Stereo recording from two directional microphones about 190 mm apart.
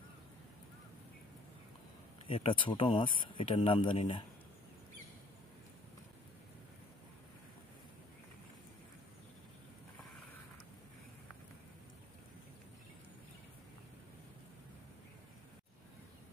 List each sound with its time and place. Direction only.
2.2 s speech: 30° left (ahead or behind)